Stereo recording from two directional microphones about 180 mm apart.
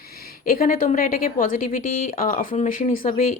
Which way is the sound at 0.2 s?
55° left (ahead or behind).